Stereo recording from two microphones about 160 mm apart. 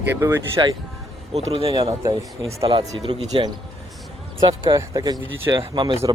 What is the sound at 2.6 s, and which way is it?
Speech, 35° right (ahead or behind).